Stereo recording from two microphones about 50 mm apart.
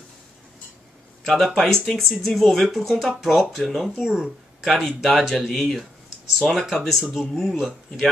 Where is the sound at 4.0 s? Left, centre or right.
Centre.